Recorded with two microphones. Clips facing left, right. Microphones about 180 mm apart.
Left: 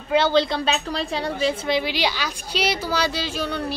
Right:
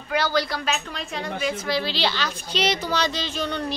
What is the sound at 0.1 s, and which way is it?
A woman's voice, 25° left (ahead or behind).